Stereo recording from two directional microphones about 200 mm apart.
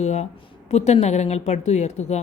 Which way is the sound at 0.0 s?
35° left (ahead or behind).